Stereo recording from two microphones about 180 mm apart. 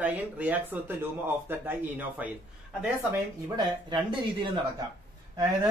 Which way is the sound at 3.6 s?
25° right (ahead or behind).